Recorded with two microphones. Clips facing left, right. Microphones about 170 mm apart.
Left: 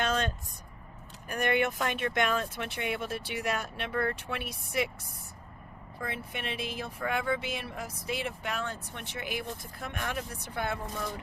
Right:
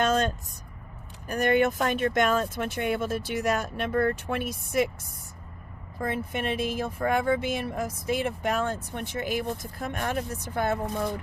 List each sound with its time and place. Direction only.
0.0 s vehicle: 45° right (ahead or behind)
1.3 s speech: 40° right (ahead or behind)
6.0 s speech: 45° right (ahead or behind)